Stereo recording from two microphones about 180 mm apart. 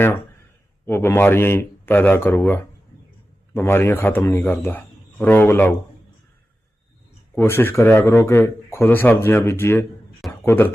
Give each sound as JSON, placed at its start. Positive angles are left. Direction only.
{"t": 0.9, "sound": "speech", "side_deg": 10}
{"t": 7.3, "sound": "speech", "side_deg": 10}